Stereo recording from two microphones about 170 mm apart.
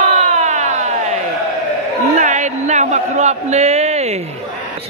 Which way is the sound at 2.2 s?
45° right (ahead or behind).